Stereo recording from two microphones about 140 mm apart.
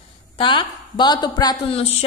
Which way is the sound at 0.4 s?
35° left (ahead or behind).